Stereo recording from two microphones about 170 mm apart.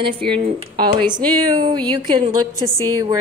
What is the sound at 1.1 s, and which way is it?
Speech, 25° right (ahead or behind).